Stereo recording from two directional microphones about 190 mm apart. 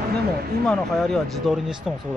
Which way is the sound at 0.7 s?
Centre (ahead or behind).